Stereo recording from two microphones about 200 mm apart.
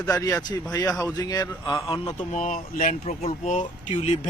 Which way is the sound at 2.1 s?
40° left (ahead or behind).